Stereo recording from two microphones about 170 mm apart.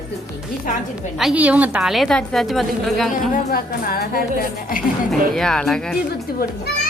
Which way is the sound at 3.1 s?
60° left (ahead or behind).